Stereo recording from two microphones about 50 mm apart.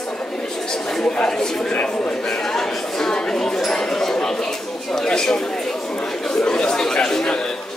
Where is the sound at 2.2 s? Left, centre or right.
Centre.